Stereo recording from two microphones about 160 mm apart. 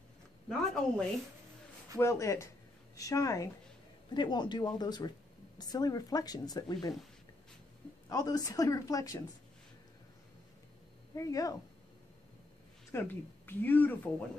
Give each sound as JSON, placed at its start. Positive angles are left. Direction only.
{"t": 0.5, "sound": "speech", "side_deg": 5}
{"t": 2.0, "sound": "a woman's voice", "side_deg": 20}
{"t": 8.1, "sound": "a woman's voice", "side_deg": 25}
{"t": 11.1, "sound": "a woman's voice", "side_deg": 20}
{"t": 12.9, "sound": "speech", "side_deg": 15}